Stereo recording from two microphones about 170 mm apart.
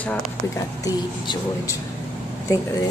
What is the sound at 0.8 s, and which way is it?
Speech, 25° left (ahead or behind).